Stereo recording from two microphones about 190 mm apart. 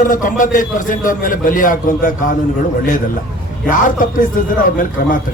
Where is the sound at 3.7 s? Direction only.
45° left (ahead or behind).